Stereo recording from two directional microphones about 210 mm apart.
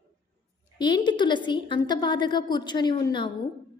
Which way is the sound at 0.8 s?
20° left (ahead or behind).